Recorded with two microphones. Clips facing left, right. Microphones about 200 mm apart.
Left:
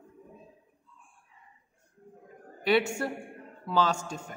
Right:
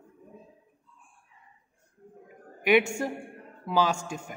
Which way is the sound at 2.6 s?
15° right (ahead or behind).